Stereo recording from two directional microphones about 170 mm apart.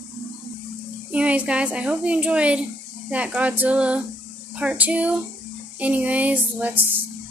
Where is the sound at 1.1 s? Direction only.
10° right (ahead or behind).